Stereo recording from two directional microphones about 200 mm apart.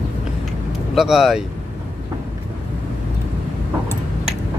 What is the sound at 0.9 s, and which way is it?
Vehicle, centre (ahead or behind).